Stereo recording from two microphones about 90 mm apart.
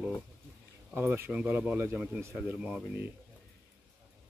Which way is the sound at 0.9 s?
25° right (ahead or behind).